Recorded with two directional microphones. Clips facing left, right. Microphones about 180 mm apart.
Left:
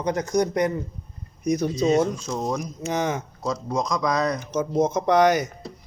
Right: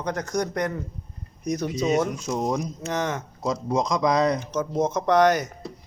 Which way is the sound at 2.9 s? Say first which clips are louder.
Left 3 dB; 10° left (ahead or behind).